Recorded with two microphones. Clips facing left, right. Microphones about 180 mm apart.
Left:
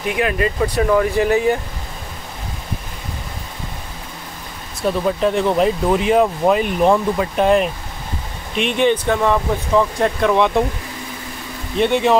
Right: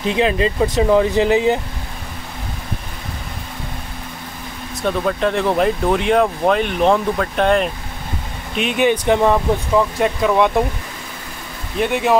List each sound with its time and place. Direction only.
0.0 s speech: 25° right (ahead or behind)
4.8 s speech: 5° left (ahead or behind); by 9.4 s 15° right (ahead or behind)
9.8 s speech: 5° right (ahead or behind)
11.8 s speech: 5° right (ahead or behind)